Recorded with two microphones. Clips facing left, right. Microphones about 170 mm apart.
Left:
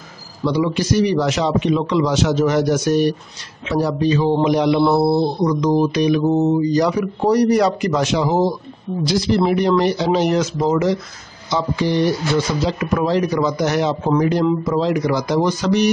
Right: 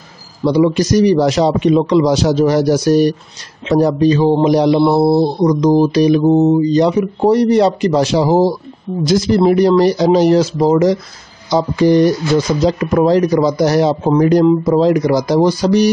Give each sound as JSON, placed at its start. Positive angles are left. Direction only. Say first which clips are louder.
{"t": 0.4, "sound": "a man's voice", "louder": "right 6 dB", "side_deg": -40}
{"t": 4.9, "sound": "mantra", "louder": "right 4 dB", "side_deg": -30}
{"t": 9.0, "sound": "a man's voice", "louder": "right 5 dB", "side_deg": -45}